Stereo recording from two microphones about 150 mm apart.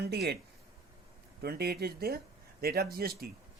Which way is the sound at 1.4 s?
90° right.